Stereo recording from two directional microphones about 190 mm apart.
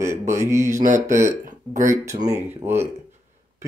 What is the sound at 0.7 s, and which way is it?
Speech, 40° right (ahead or behind).